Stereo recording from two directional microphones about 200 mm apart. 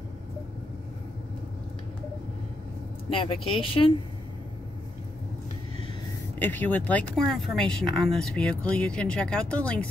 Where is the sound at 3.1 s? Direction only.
25° left (ahead or behind).